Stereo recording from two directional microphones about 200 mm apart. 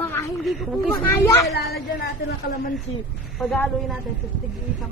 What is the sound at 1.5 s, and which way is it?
Speech, 50° left (ahead or behind).